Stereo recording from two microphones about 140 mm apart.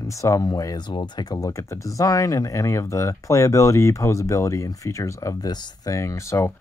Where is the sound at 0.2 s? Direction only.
25° left (ahead or behind).